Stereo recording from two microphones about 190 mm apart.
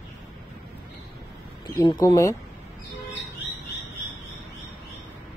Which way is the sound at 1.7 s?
20° left (ahead or behind).